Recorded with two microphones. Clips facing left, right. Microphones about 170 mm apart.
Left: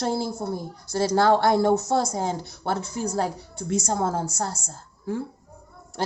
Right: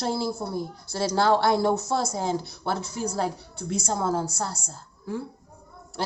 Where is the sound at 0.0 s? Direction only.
50° left (ahead or behind).